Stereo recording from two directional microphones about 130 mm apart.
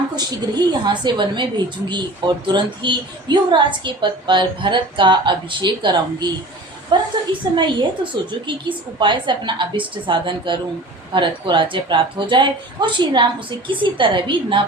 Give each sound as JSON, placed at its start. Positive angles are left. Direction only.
{"t": 0.2, "sound": "a woman's voice", "side_deg": -30}
{"t": 6.9, "sound": "a sound", "side_deg": -40}
{"t": 7.5, "sound": "a woman's voice", "side_deg": -40}